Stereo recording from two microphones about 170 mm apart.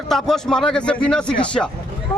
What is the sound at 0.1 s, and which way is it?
A man's voice, 5° left (ahead or behind).